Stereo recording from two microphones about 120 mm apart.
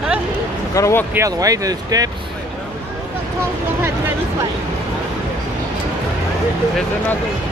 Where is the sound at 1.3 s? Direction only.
30° right (ahead or behind).